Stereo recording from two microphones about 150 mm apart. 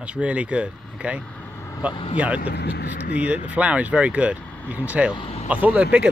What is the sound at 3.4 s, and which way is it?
Speech, 10° right (ahead or behind).